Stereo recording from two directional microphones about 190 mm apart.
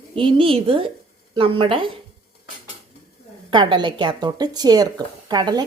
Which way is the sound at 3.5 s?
25° right (ahead or behind).